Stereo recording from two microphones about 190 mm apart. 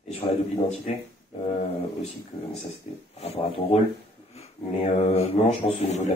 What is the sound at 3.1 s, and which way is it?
Speech, 30° left (ahead or behind).